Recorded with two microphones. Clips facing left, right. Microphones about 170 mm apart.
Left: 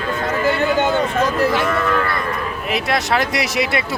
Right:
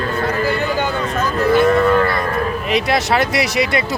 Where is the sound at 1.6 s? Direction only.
35° right (ahead or behind).